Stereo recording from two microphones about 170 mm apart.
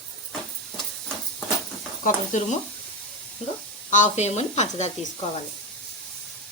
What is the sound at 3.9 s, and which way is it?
Speech, 45° left (ahead or behind).